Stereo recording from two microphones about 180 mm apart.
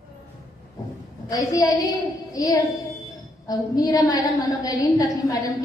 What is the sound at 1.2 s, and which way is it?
A woman's voice, 20° left (ahead or behind).